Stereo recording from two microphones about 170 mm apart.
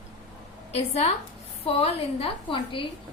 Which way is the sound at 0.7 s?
40° left (ahead or behind).